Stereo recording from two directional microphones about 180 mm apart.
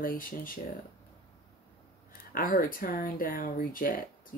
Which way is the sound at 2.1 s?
55° left (ahead or behind).